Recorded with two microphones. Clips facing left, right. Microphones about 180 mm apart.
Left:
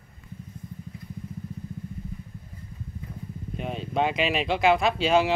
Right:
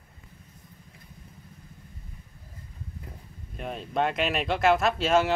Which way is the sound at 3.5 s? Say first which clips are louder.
Left 1 dB; centre (ahead or behind).